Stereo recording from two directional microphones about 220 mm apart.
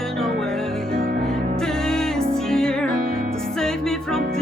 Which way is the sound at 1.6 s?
5° left (ahead or behind).